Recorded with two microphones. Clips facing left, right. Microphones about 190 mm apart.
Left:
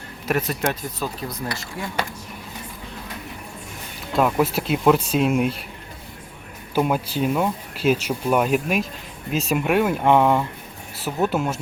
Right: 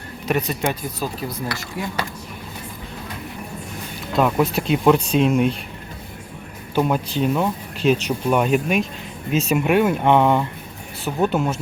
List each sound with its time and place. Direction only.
0.3 s speech: centre (ahead or behind)
4.1 s speech: 5° left (ahead or behind)
6.7 s speech: 5° left (ahead or behind)